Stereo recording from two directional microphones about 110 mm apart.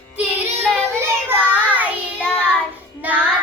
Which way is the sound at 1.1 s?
15° right (ahead or behind).